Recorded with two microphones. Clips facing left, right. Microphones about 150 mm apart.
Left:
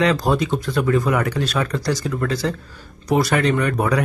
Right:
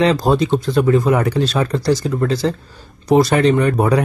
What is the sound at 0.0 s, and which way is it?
Speech, 25° right (ahead or behind).